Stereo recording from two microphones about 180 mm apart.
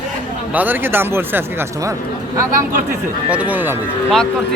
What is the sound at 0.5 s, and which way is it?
Speech, 10° right (ahead or behind).